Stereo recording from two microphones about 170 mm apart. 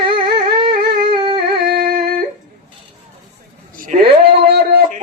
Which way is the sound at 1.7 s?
65° right (ahead or behind).